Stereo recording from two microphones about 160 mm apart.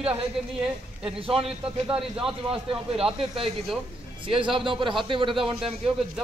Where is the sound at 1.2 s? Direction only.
35° right (ahead or behind).